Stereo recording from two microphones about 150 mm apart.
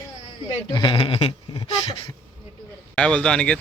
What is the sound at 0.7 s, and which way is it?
Speech, 30° left (ahead or behind).